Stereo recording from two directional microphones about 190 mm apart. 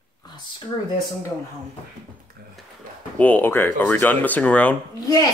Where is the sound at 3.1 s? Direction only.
10° left (ahead or behind).